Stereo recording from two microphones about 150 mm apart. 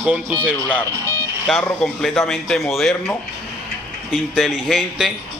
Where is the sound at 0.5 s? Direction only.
10° right (ahead or behind).